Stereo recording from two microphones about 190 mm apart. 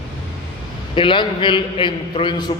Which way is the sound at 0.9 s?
25° left (ahead or behind).